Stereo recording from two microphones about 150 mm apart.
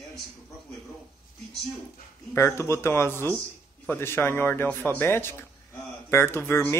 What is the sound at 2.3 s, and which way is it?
Speech, 20° left (ahead or behind).